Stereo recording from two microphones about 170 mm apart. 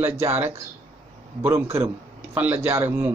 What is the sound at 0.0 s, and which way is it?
A man's voice, 15° right (ahead or behind).